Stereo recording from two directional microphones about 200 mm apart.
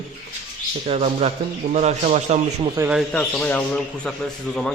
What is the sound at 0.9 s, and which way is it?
A man's voice, 30° right (ahead or behind).